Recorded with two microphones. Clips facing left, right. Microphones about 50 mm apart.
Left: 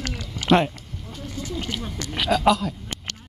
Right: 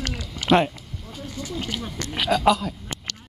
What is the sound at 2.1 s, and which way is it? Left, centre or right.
Speech, centre.